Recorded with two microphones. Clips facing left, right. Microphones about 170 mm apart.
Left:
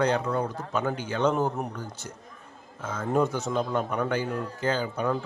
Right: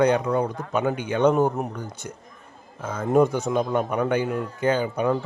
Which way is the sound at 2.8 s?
15° right (ahead or behind).